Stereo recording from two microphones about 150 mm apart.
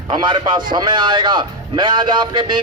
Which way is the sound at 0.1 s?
30° right (ahead or behind).